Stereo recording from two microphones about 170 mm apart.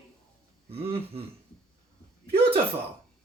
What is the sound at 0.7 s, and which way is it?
Speech, 35° right (ahead or behind).